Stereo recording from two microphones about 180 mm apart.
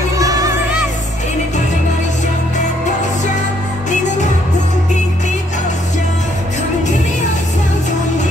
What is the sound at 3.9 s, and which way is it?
Music, 40° left (ahead or behind).